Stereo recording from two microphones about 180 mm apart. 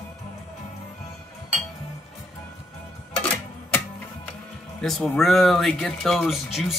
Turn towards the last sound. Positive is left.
turn(degrees=0)  # may be behind; listen again after turning